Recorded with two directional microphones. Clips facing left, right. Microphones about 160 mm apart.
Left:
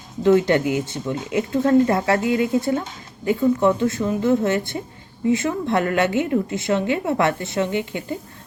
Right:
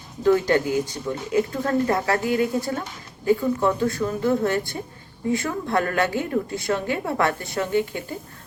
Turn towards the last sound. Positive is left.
turn(degrees=20)  # may be behind; listen again after turning